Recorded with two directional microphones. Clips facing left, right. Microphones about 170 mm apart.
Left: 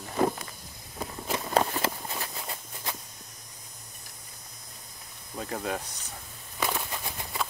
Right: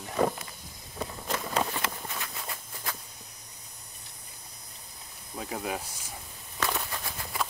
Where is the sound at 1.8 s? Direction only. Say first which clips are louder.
Left 4 dB; 30° left (ahead or behind).